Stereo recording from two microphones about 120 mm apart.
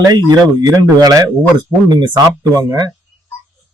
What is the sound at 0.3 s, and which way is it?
Speech, 30° right (ahead or behind).